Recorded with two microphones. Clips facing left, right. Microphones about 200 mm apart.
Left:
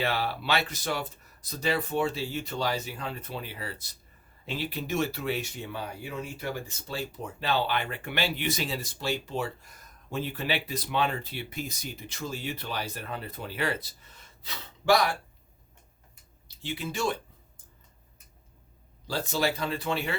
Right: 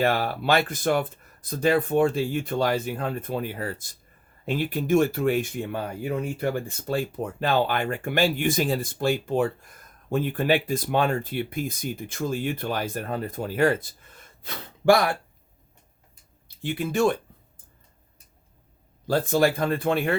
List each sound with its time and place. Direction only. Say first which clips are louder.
0.0 s speech: right 6 dB; 50° right (ahead or behind)
16.6 s speech: right 8 dB; 55° right (ahead or behind)
19.0 s speech: right 8 dB; 55° right (ahead or behind)